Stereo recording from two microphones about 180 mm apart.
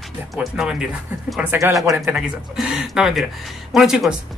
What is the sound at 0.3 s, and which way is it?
Speech, centre (ahead or behind).